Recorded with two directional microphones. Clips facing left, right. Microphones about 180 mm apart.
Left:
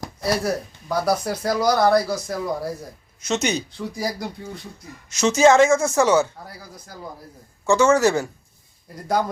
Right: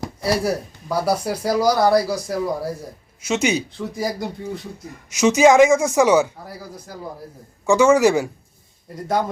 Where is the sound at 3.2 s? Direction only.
10° right (ahead or behind).